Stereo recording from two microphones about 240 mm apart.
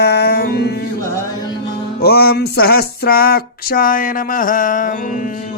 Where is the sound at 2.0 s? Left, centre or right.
Left.